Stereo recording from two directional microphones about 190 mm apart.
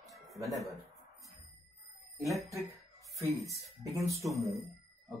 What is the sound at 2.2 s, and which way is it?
Speech, centre (ahead or behind).